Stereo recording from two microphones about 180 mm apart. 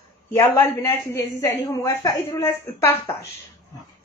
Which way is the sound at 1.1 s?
20° left (ahead or behind).